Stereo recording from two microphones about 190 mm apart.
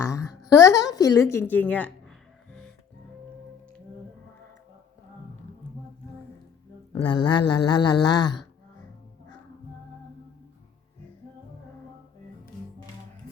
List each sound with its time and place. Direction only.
0.0 s a sound: 15° left (ahead or behind)
0.9 s a woman's voice: 15° left (ahead or behind)
6.9 s speech: 25° left (ahead or behind)